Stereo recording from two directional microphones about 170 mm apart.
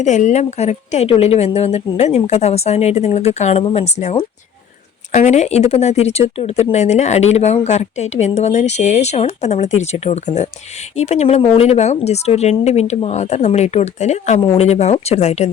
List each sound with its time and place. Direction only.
0.0 s speech: 45° left (ahead or behind)